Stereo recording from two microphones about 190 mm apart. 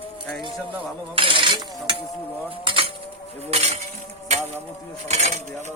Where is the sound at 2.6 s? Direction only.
30° right (ahead or behind).